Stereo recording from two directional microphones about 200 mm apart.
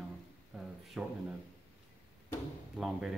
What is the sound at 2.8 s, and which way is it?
Speech, centre (ahead or behind).